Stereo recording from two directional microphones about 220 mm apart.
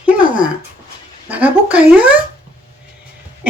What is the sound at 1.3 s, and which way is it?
Speech, 5° right (ahead or behind).